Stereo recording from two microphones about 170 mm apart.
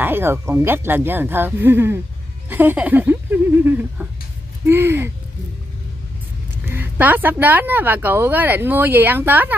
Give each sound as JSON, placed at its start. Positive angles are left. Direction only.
{"t": 0.0, "sound": "a woman's voice", "side_deg": -15}
{"t": 6.6, "sound": "a woman's voice", "side_deg": -10}